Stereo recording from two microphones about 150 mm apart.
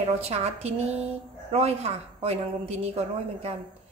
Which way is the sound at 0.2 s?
45° right (ahead or behind).